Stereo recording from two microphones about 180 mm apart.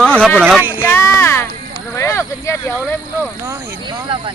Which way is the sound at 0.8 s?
15° left (ahead or behind).